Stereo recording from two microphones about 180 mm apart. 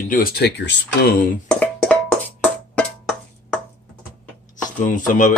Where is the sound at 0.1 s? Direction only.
55° left (ahead or behind).